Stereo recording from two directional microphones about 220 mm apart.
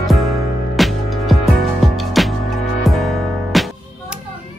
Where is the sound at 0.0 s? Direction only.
Centre (ahead or behind).